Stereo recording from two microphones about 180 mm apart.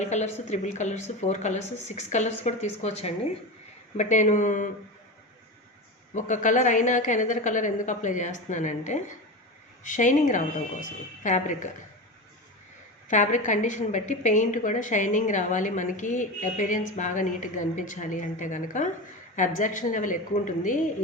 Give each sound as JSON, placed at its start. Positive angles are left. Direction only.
{"t": 0.0, "sound": "a woman's voice", "side_deg": 40}
{"t": 6.1, "sound": "a woman's voice", "side_deg": 45}
{"t": 13.1, "sound": "a woman's voice", "side_deg": 45}